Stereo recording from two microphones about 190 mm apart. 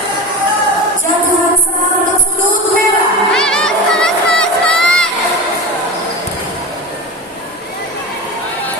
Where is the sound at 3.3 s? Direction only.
5° left (ahead or behind).